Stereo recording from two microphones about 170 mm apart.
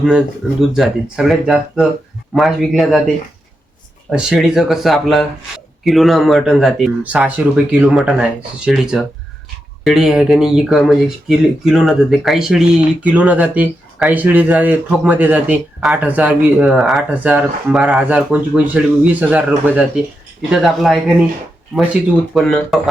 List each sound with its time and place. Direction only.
0.7 s speech: 5° right (ahead or behind)
4.1 s speech: 5° right (ahead or behind)
22.4 s speech: centre (ahead or behind)